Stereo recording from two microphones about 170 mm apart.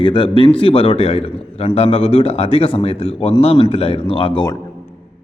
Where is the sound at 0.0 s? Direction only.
30° left (ahead or behind).